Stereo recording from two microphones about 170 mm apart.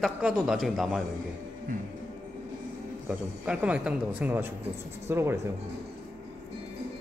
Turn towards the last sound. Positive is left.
turn(degrees=-15)  # may be behind; listen again after turning